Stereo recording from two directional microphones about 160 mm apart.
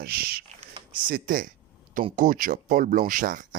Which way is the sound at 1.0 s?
60° right (ahead or behind).